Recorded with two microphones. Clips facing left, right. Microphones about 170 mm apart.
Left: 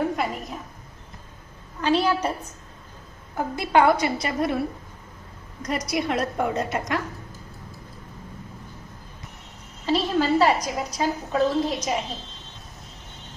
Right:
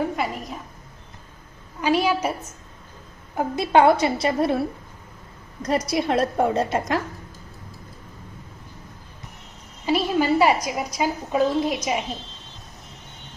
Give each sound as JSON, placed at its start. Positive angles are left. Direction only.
{"t": 0.0, "sound": "a woman's voice", "side_deg": 0}
{"t": 1.8, "sound": "a woman's voice", "side_deg": -10}
{"t": 3.3, "sound": "a woman's voice", "side_deg": -20}
{"t": 5.9, "sound": "a woman's voice", "side_deg": -30}
{"t": 9.8, "sound": "a woman's voice", "side_deg": -10}